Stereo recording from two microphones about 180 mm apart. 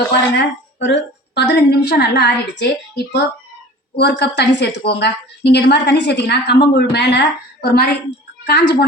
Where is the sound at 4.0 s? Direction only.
70° left (ahead or behind).